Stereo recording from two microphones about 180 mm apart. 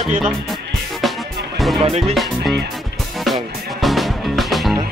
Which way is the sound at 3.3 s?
Centre (ahead or behind).